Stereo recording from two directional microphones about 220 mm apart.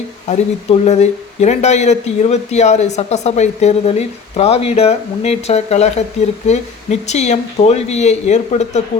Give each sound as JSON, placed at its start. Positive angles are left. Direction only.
{"t": 0.3, "sound": "speech", "side_deg": 30}